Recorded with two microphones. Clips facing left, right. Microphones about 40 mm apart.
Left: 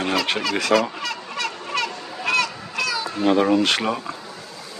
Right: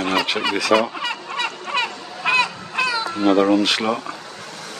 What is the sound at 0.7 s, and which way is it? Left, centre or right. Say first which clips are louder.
Fowl: right 2 dB; centre.